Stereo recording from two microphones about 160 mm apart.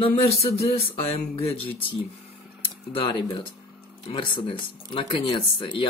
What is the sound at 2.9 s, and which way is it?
Speech, 35° left (ahead or behind).